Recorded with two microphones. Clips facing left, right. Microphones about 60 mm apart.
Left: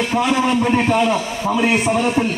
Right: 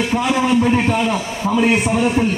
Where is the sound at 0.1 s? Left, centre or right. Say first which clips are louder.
Even; centre.